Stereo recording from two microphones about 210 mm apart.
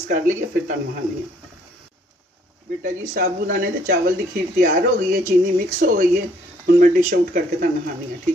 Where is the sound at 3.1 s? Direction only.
40° right (ahead or behind).